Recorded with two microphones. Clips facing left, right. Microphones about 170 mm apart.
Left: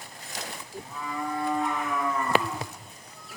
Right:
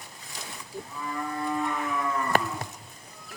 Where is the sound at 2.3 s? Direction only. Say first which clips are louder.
Even; 45° right (ahead or behind).